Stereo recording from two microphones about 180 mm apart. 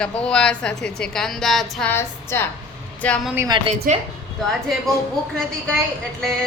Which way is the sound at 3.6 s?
35° right (ahead or behind).